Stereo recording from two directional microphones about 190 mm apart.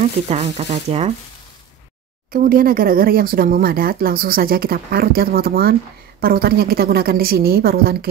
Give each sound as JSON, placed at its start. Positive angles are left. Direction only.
{"t": 0.0, "sound": "speech", "side_deg": -35}
{"t": 2.3, "sound": "speech", "side_deg": -50}